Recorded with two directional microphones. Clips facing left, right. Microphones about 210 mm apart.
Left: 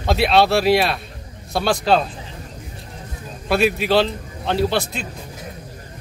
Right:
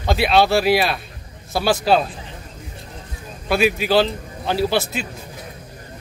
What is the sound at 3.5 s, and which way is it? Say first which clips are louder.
A man's voice: even; centre (ahead or behind).